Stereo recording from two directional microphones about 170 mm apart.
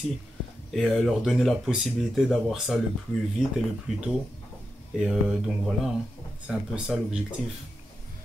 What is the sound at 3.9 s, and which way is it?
Speech, centre (ahead or behind).